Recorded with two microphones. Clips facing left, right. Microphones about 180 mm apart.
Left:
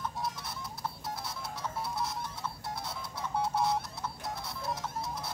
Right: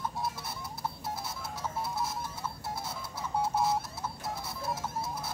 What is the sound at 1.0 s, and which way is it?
Music, 5° right (ahead or behind).